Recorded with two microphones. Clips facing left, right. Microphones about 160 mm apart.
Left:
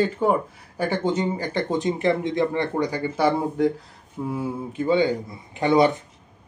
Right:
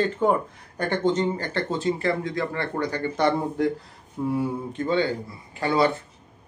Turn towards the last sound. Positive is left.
turn(degrees=20)  # may be behind; listen again after turning